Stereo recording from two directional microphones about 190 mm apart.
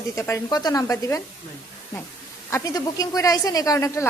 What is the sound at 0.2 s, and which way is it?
A woman's voice, 20° left (ahead or behind).